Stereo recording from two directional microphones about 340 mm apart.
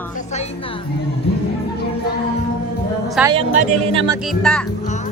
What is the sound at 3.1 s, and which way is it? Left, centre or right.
Speech, centre.